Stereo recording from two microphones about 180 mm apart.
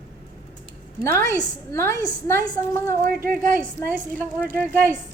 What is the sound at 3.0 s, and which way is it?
Speech, 50° right (ahead or behind).